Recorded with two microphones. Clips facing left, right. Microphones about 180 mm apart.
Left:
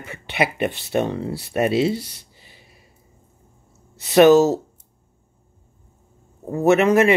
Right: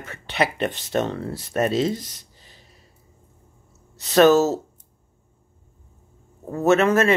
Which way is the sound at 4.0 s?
15° left (ahead or behind).